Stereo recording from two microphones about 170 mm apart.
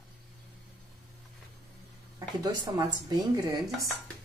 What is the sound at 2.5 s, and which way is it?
Speech, 25° right (ahead or behind).